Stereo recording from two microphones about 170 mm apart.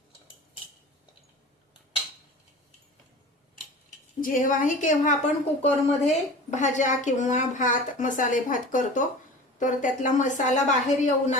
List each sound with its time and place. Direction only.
4.2 s a woman's voice: 50° left (ahead or behind)